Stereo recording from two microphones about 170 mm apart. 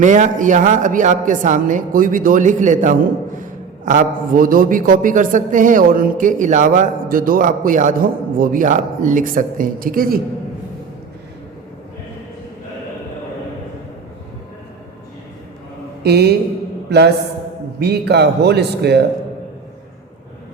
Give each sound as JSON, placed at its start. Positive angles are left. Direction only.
{"t": 0.0, "sound": "a man's voice", "side_deg": -50}
{"t": 16.0, "sound": "speech", "side_deg": -75}
{"t": 17.7, "sound": "speech", "side_deg": -70}